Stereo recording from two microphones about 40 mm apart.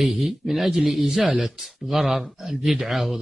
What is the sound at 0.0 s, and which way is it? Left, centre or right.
Speech, centre.